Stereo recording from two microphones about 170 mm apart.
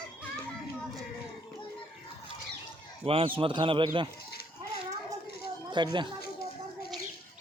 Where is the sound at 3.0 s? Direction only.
35° right (ahead or behind).